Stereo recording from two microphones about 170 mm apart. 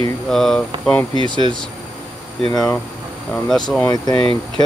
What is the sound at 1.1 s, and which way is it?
Speech, 30° right (ahead or behind).